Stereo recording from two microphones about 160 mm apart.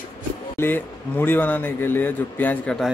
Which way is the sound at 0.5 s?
15° left (ahead or behind).